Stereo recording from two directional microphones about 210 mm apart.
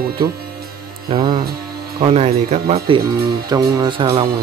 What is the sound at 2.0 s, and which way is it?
Speech, 30° right (ahead or behind).